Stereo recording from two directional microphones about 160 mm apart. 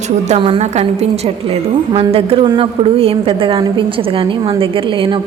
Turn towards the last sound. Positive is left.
turn(degrees=-30)  # may be behind; listen again after turning